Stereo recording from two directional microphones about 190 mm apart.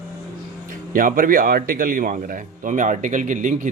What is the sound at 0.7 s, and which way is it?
A man's voice, 45° right (ahead or behind).